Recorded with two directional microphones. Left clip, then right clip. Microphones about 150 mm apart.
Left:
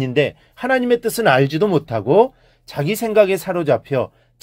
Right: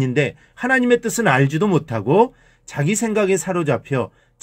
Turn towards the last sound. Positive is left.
turn(degrees=35)  # may be behind; listen again after turning